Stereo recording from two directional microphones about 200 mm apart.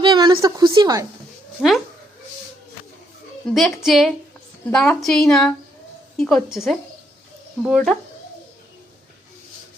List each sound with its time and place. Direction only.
0.0 s a sound: 20° right (ahead or behind)
0.4 s a woman's voice: 25° right (ahead or behind)
1.6 s speech: 5° left (ahead or behind)
3.5 s speech: centre (ahead or behind)